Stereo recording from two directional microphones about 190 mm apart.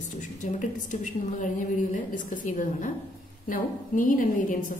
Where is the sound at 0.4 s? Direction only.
40° left (ahead or behind).